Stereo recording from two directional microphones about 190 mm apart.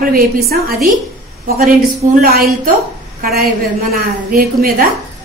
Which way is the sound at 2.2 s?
50° right (ahead or behind).